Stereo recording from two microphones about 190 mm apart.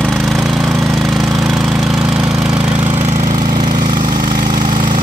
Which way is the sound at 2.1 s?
5° right (ahead or behind).